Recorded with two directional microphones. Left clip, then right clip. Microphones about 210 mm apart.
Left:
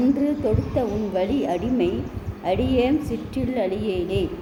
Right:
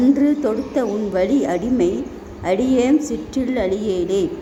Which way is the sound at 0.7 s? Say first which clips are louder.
Right 4 dB; 20° right (ahead or behind).